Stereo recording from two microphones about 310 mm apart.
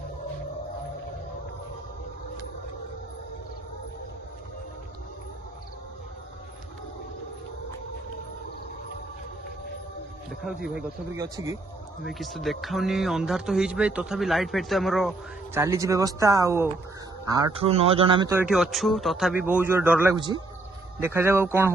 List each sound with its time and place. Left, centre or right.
10.4 s speech: centre
12.0 s speech: centre